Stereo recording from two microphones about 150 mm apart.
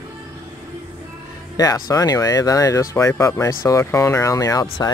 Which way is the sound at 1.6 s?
25° left (ahead or behind).